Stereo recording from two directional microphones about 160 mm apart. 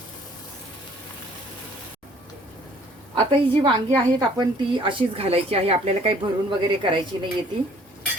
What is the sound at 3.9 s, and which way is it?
A woman's voice, 25° right (ahead or behind).